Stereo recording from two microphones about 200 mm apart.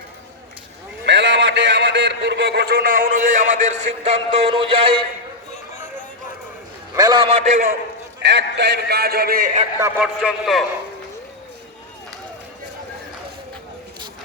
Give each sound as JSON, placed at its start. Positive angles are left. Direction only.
{"t": 1.0, "sound": "a man's voice", "side_deg": -60}
{"t": 6.9, "sound": "a man's voice", "side_deg": -20}
{"t": 8.2, "sound": "a man's voice", "side_deg": -60}
{"t": 9.8, "sound": "a man's voice", "side_deg": -5}